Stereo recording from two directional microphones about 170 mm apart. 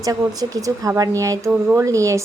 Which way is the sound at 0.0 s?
20° right (ahead or behind).